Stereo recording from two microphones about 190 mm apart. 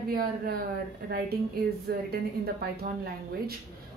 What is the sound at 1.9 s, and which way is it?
Speech, 55° right (ahead or behind).